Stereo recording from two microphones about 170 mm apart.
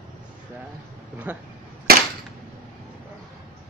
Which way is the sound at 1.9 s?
65° right (ahead or behind).